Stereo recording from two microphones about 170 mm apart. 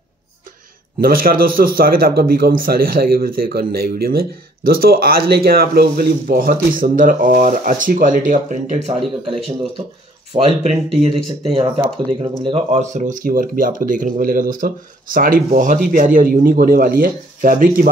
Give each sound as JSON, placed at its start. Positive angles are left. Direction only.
{"t": 1.0, "sound": "a man's voice", "side_deg": -60}
{"t": 10.3, "sound": "speech", "side_deg": -40}